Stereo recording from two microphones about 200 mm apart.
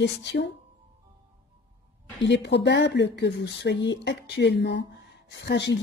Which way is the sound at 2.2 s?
60° left (ahead or behind).